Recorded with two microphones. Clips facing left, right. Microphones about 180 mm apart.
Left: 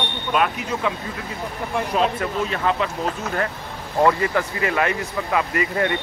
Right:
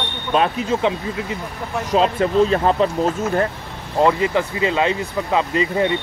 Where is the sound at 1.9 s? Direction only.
30° right (ahead or behind).